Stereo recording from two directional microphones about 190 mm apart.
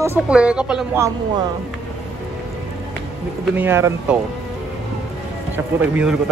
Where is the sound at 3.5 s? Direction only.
10° right (ahead or behind).